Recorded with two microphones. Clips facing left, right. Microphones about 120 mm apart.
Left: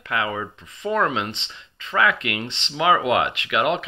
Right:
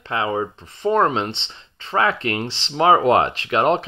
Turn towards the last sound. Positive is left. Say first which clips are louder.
# right 4 dB
turn(degrees=-35)  # may be behind; listen again after turning